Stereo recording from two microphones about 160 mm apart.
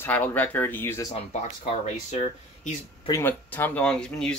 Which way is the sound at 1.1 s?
45° left (ahead or behind).